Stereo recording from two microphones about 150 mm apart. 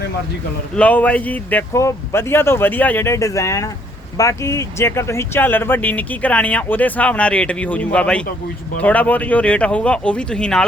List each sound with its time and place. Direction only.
0.8 s speech: 10° left (ahead or behind)